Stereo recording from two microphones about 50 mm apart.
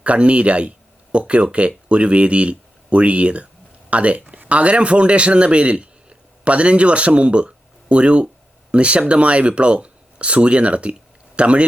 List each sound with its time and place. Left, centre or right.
0.0 s speech: right